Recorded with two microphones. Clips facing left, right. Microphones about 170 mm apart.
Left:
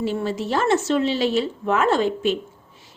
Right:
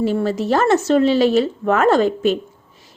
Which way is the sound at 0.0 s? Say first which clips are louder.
Right 5 dB; 45° right (ahead or behind).